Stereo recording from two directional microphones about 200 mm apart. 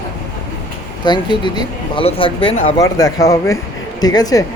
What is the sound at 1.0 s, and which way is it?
Speech, 20° left (ahead or behind).